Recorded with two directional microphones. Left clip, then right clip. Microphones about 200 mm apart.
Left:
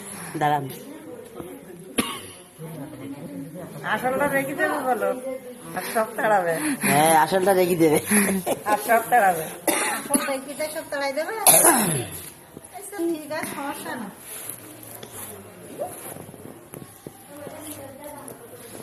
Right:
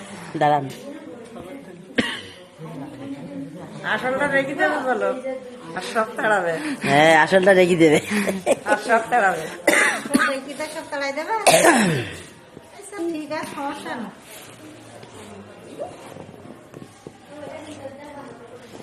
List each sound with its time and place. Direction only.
0.3 s speech: 25° right (ahead or behind)
2.0 s cough: 25° right (ahead or behind)
3.8 s a man's voice: 5° left (ahead or behind)
6.6 s a woman's voice: 20° left (ahead or behind)
6.8 s speech: 30° right (ahead or behind)
8.1 s a woman's voice: 25° left (ahead or behind)
8.7 s a woman's voice: 5° left (ahead or behind)
9.6 s cough: 40° right (ahead or behind)
10.6 s a woman's voice: 20° left (ahead or behind)
11.4 s speech: 35° right (ahead or behind)
13.3 s a woman's voice: 30° left (ahead or behind)